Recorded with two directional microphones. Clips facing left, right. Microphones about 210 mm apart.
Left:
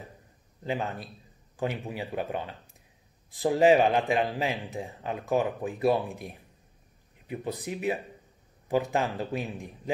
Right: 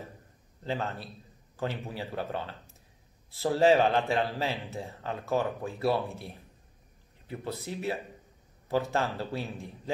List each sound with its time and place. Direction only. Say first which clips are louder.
0.7 s speech: left 2 dB; 15° left (ahead or behind)